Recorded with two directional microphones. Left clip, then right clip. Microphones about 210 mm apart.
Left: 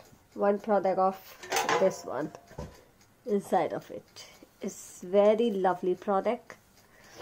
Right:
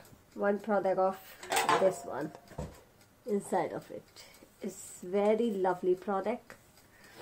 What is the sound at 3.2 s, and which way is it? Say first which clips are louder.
A woman's voice: left 4 dB; 45° left (ahead or behind).